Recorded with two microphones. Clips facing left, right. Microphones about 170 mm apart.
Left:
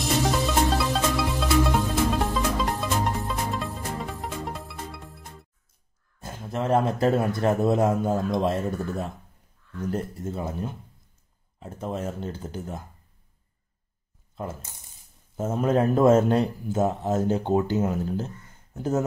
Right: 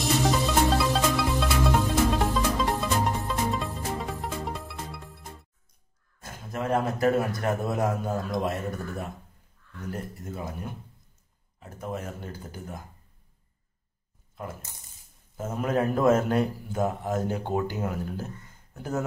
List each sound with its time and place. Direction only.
0.0 s music: centre (ahead or behind)
6.5 s a man's voice: 30° left (ahead or behind)
11.6 s a man's voice: 30° left (ahead or behind)
14.3 s a man's voice: 25° left (ahead or behind)